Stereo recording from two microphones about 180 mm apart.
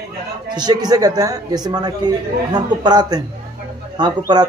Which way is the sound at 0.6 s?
20° right (ahead or behind).